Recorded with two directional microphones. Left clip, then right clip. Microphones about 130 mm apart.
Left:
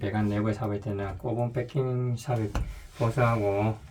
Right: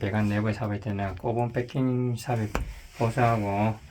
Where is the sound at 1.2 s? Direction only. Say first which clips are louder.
Right 4 dB; 90° right.